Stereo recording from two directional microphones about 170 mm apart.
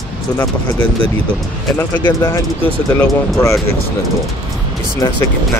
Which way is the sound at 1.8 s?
20° left (ahead or behind).